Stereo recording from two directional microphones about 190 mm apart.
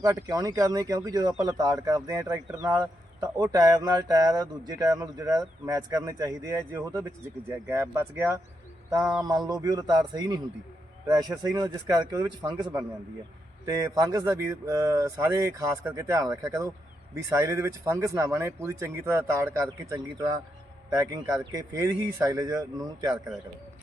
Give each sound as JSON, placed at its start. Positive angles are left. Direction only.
{"t": 0.0, "sound": "speech", "side_deg": -20}